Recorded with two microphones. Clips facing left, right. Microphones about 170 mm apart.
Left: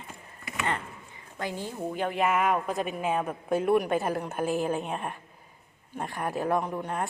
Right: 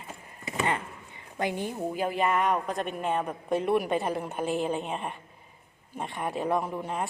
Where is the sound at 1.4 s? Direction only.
20° right (ahead or behind).